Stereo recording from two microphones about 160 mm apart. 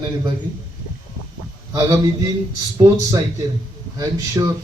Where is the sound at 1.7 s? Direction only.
20° right (ahead or behind).